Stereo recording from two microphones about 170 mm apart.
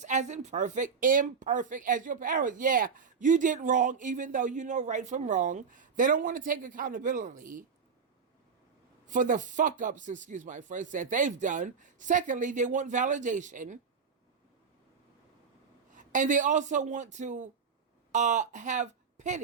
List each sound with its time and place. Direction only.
0.0 s speech: 45° right (ahead or behind)
9.0 s speech: 50° right (ahead or behind)
16.0 s speech: 50° right (ahead or behind)